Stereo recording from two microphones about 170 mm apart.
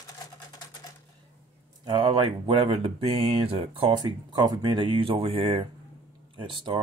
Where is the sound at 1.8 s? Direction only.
25° right (ahead or behind).